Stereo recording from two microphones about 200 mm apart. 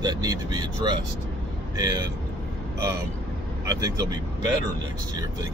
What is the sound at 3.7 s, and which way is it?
Speech, 15° right (ahead or behind).